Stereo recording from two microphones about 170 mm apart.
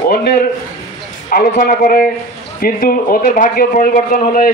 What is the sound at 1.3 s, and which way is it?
A man's voice, 55° left (ahead or behind).